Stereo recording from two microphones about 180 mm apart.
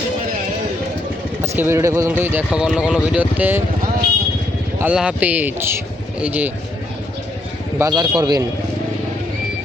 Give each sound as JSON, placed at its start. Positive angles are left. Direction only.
{"t": 1.4, "sound": "speech", "side_deg": -10}
{"t": 4.8, "sound": "speech", "side_deg": -5}
{"t": 7.8, "sound": "speech", "side_deg": -20}